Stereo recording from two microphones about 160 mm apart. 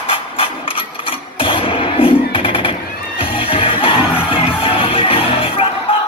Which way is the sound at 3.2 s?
35° left (ahead or behind).